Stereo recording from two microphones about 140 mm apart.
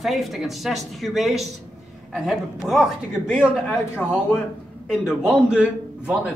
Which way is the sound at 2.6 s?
5° right (ahead or behind).